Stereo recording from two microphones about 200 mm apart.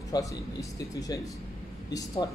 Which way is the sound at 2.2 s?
20° left (ahead or behind).